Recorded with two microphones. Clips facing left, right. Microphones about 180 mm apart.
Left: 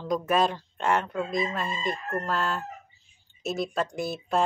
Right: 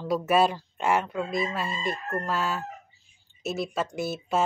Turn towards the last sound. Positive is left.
turn(degrees=-5)  # may be behind; listen again after turning